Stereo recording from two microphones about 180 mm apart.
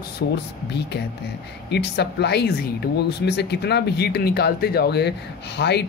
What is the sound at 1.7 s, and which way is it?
Speech, 70° left (ahead or behind).